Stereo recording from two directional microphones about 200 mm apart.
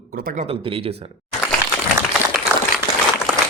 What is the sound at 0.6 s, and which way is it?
Speech, 30° right (ahead or behind).